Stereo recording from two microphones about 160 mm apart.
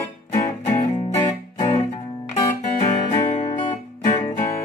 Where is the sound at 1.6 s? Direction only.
35° left (ahead or behind).